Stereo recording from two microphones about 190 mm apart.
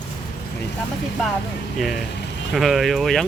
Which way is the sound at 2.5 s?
Centre (ahead or behind).